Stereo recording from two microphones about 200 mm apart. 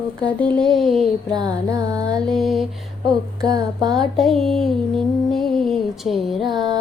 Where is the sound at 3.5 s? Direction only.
20° right (ahead or behind).